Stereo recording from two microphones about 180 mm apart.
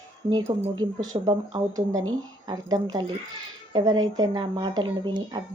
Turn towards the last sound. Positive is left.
turn(degrees=-25)  # may be behind; listen again after turning